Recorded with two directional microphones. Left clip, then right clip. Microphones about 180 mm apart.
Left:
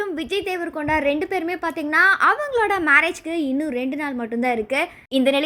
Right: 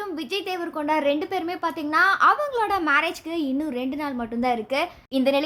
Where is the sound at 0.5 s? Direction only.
15° left (ahead or behind).